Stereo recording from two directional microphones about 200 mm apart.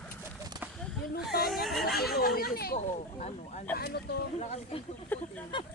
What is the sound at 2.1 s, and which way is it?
Speech, 50° left (ahead or behind).